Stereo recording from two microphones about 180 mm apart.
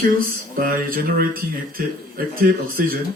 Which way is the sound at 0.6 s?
55° right (ahead or behind).